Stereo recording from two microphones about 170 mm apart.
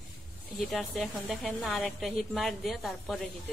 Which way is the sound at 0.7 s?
Centre (ahead or behind).